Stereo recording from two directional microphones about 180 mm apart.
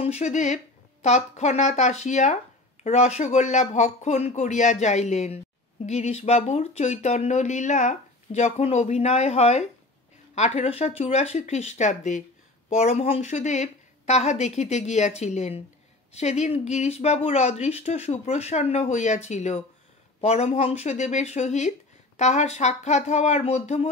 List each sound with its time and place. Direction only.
0.0 s speech: 40° left (ahead or behind)